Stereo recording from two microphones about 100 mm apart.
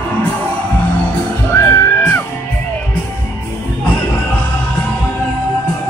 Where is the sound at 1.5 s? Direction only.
20° left (ahead or behind).